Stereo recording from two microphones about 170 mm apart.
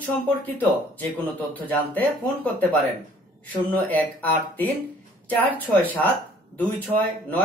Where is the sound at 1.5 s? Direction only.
10° left (ahead or behind).